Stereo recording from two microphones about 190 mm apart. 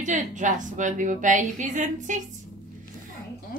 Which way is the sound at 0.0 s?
40° right (ahead or behind).